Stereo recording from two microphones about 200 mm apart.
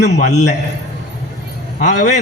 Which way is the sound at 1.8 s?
35° left (ahead or behind).